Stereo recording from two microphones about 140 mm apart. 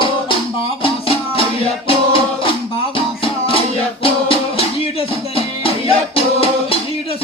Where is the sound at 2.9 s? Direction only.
40° left (ahead or behind).